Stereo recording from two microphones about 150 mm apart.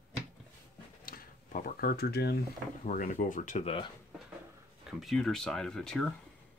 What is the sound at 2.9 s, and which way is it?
Speech, 60° left (ahead or behind).